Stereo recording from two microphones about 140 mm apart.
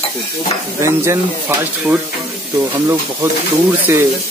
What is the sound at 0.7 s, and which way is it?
Speech, 20° right (ahead or behind).